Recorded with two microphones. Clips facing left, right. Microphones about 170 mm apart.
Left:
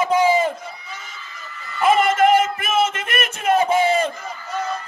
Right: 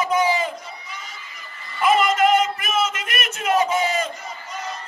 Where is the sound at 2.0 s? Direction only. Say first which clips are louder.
Left 2 dB; 50° left (ahead or behind).